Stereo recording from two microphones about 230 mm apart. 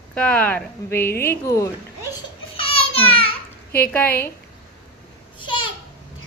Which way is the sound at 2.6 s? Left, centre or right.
Left.